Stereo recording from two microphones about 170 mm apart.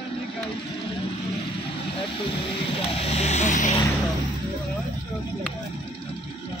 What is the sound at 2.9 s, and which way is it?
Vehicle, 35° left (ahead or behind).